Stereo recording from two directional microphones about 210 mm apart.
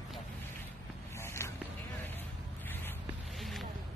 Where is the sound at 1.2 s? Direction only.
10° left (ahead or behind).